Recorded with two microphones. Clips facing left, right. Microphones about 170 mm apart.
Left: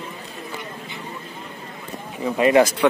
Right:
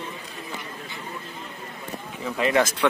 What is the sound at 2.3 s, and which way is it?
Speech, 15° left (ahead or behind).